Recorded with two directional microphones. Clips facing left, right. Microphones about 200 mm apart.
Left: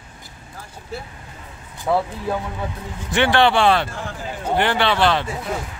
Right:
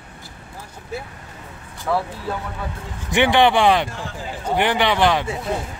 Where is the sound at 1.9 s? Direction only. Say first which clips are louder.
Left 2 dB; 20° left (ahead or behind).